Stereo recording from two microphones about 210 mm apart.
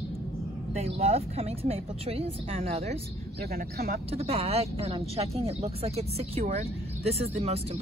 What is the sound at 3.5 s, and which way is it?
Speech, 45° right (ahead or behind).